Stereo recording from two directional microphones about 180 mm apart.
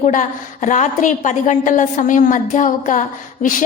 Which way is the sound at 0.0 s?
45° left (ahead or behind).